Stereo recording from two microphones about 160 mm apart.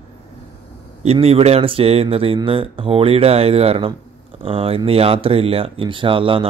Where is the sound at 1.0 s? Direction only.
40° right (ahead or behind).